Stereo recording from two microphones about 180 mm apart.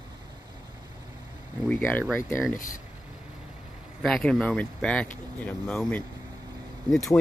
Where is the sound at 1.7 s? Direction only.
10° left (ahead or behind).